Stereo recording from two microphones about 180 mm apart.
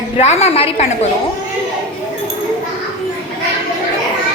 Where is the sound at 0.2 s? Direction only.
35° left (ahead or behind).